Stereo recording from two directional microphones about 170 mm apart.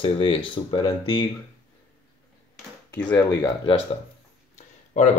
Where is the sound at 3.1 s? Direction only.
25° left (ahead or behind).